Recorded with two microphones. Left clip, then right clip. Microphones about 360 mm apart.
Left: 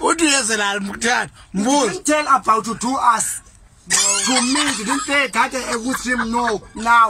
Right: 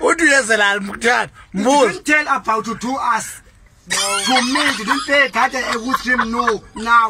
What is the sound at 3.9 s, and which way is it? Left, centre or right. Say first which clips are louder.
Speech: right 2 dB; centre.